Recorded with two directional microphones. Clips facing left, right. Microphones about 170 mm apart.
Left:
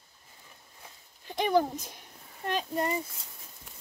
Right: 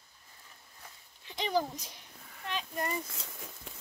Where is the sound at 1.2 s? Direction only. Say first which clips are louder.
Left 6 dB; 55° left (ahead or behind).